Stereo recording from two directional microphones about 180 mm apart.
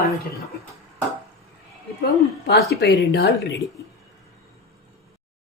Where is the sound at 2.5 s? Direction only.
70° left (ahead or behind).